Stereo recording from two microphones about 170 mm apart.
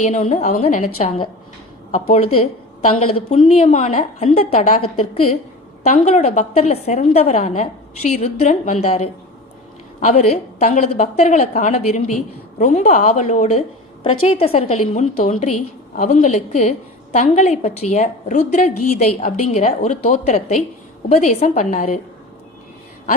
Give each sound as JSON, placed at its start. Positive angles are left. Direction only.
{"t": 0.0, "sound": "a woman's voice", "side_deg": 45}
{"t": 5.8, "sound": "a woman's voice", "side_deg": 40}